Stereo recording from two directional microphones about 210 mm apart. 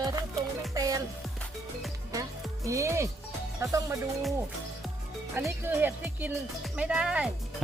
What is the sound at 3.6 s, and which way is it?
Speech, 15° right (ahead or behind).